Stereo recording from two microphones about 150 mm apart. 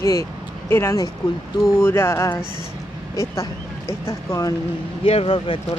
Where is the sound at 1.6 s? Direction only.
15° left (ahead or behind).